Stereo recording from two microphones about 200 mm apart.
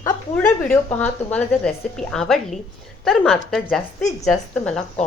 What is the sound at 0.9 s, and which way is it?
A woman's voice, 5° left (ahead or behind).